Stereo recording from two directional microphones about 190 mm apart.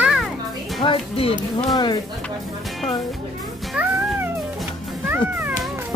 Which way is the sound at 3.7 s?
10° right (ahead or behind).